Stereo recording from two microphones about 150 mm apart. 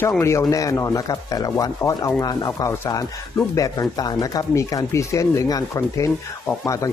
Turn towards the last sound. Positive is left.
turn(degrees=20)  # may be behind; listen again after turning